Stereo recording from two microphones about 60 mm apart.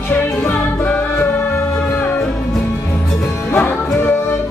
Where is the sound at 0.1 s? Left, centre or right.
Left.